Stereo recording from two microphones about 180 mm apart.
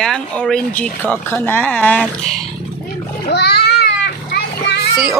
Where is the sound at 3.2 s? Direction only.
65° left (ahead or behind).